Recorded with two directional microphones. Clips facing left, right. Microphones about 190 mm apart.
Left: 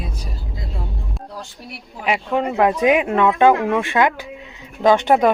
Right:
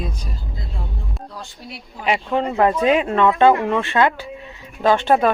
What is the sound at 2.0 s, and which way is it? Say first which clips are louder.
A woman's voice: even; 5° left (ahead or behind).